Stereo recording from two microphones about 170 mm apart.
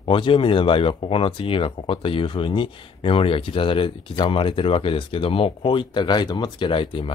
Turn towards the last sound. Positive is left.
turn(degrees=30)  # may be behind; listen again after turning